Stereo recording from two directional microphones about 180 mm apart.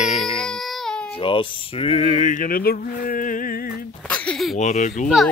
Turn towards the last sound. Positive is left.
turn(degrees=0)  # may be behind; listen again after turning